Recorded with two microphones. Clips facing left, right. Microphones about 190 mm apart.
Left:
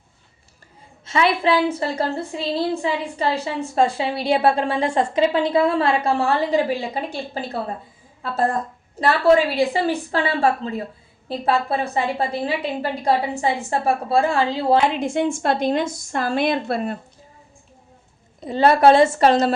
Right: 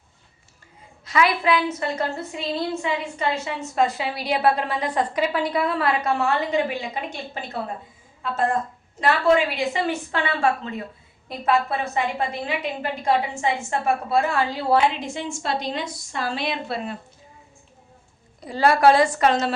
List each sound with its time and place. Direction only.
1.0 s a woman's voice: 25° left (ahead or behind)
14.9 s a woman's voice: 55° left (ahead or behind)
18.3 s a woman's voice: 25° left (ahead or behind)